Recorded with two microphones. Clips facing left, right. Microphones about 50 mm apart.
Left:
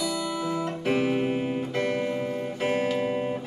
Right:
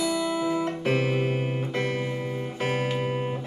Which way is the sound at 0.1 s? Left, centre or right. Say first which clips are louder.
Right 3 dB; centre.